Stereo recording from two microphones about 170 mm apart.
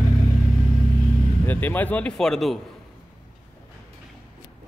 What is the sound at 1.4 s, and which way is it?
Speech, 10° left (ahead or behind).